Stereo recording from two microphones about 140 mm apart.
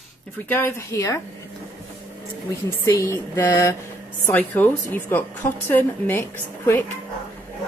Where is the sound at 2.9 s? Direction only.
20° left (ahead or behind).